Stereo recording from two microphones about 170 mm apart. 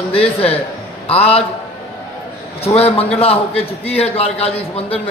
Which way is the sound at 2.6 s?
35° left (ahead or behind).